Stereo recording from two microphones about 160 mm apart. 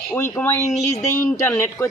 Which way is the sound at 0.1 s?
15° left (ahead or behind).